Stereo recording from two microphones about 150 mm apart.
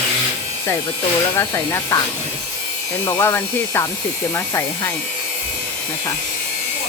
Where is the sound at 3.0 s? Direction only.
15° left (ahead or behind).